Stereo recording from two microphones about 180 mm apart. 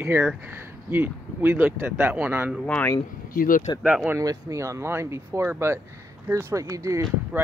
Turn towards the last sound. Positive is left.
turn(degrees=-15)  # may be behind; listen again after turning